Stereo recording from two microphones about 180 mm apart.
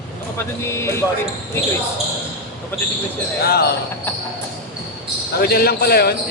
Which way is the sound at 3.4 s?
60° left (ahead or behind).